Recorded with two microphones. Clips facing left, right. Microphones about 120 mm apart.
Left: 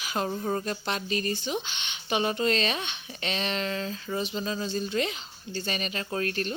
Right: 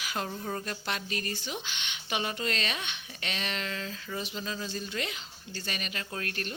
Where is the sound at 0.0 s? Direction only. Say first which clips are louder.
Left 5 dB; 25° left (ahead or behind).